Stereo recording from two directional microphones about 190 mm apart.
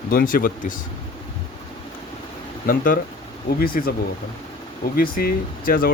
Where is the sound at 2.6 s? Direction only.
45° left (ahead or behind).